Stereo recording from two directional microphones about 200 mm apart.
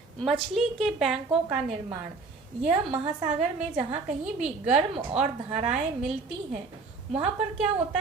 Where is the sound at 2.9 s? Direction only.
30° right (ahead or behind).